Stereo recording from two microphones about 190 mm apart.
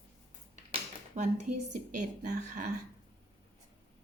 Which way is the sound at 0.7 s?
40° right (ahead or behind).